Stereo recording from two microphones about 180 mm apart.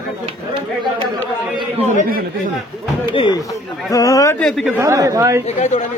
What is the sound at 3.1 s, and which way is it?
Speech, 30° left (ahead or behind).